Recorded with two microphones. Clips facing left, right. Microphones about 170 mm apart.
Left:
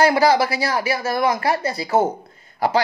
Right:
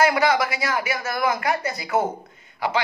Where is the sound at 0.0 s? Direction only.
35° left (ahead or behind).